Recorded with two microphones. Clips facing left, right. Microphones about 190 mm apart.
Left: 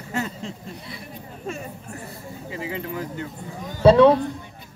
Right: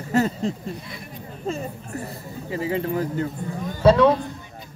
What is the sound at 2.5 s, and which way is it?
Speech, 40° right (ahead or behind).